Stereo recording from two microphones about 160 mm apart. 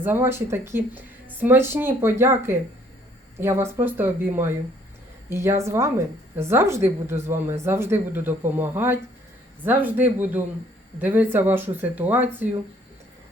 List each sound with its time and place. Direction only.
0.0 s speech: 15° right (ahead or behind)